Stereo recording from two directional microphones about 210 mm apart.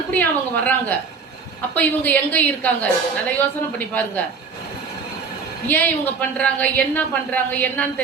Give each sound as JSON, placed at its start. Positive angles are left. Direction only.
{"t": 0.1, "sound": "a woman's voice", "side_deg": 5}
{"t": 5.6, "sound": "a woman's voice", "side_deg": 10}